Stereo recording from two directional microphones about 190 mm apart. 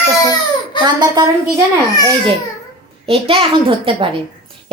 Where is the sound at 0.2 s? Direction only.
20° left (ahead or behind).